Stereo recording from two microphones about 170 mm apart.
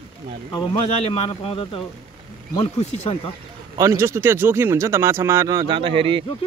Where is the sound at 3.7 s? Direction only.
15° right (ahead or behind).